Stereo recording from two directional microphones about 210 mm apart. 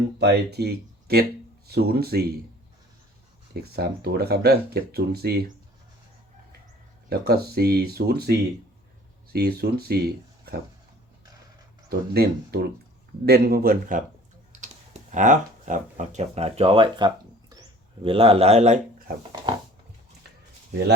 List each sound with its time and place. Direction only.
0.2 s speech: 50° right (ahead or behind)
3.5 s speech: 50° right (ahead or behind)
7.1 s speech: 50° right (ahead or behind)
11.9 s speech: 50° right (ahead or behind)
15.1 s speech: 35° right (ahead or behind)
17.5 s a sound: 20° right (ahead or behind); by 19.1 s 40° right (ahead or behind)